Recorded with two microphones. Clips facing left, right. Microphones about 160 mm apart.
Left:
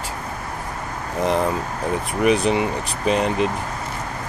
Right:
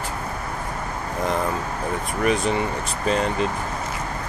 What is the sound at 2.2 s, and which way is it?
Speech, 15° left (ahead or behind).